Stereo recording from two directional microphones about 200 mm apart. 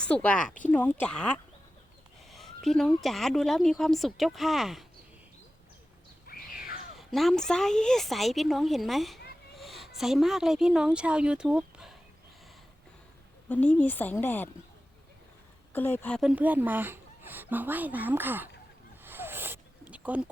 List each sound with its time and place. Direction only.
0.0 s speech: 5° left (ahead or behind)
6.2 s a sound: 45° left (ahead or behind)
6.9 s a woman's voice: centre (ahead or behind)
13.5 s speech: 10° left (ahead or behind)
15.7 s speech: 10° left (ahead or behind)
16.3 s speech: 10° right (ahead or behind)
19.0 s a sound: 10° right (ahead or behind)